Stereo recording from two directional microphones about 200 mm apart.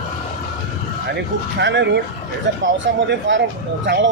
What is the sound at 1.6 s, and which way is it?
Speech, 60° right (ahead or behind).